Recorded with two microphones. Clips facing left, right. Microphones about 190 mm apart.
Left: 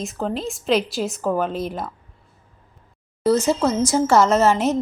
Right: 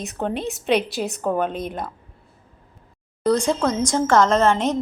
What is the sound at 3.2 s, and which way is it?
A woman's voice, 5° left (ahead or behind).